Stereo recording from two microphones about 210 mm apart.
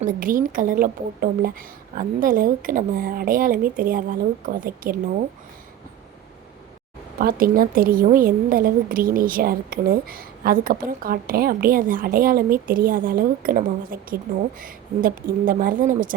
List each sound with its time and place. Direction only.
0.0 s a woman's voice: 40° right (ahead or behind)
7.2 s a woman's voice: 45° right (ahead or behind)